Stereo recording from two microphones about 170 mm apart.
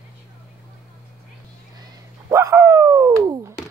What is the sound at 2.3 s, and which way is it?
Dog, 15° right (ahead or behind).